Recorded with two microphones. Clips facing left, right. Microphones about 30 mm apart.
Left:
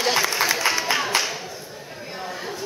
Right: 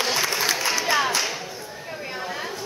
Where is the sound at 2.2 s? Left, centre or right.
Centre.